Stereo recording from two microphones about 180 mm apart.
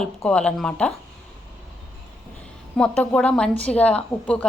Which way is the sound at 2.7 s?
5° left (ahead or behind).